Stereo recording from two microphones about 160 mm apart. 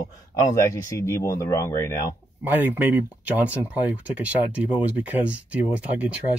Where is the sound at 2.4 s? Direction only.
10° right (ahead or behind).